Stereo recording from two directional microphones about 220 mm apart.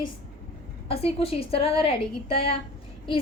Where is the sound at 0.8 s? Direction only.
25° left (ahead or behind).